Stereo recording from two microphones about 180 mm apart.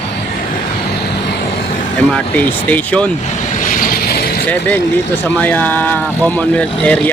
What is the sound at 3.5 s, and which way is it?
Vehicle, 50° left (ahead or behind).